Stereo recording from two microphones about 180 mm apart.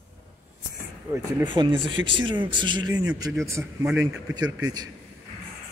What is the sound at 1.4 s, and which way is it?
A man's voice, 25° right (ahead or behind).